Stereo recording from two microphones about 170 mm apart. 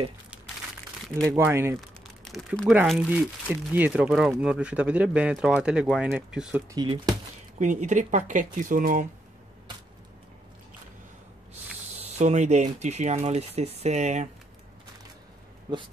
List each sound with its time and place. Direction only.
1.2 s speech: 15° right (ahead or behind)
1.8 s speech: centre (ahead or behind)
6.7 s speech: 25° right (ahead or behind)
7.5 s speech: 45° right (ahead or behind)
12.0 s speech: 40° right (ahead or behind)